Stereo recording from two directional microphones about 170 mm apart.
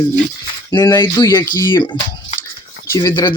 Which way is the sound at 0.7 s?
25° left (ahead or behind).